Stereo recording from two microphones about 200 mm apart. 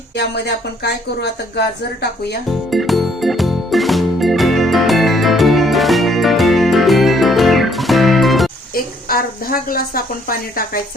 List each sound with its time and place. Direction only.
0.2 s speech: 55° left (ahead or behind)
2.6 s music: centre (ahead or behind)
8.7 s speech: 50° left (ahead or behind)